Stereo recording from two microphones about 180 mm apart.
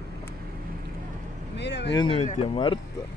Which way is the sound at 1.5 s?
75° left (ahead or behind).